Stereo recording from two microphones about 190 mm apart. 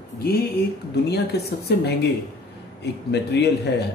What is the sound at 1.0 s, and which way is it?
Speech, 60° left (ahead or behind).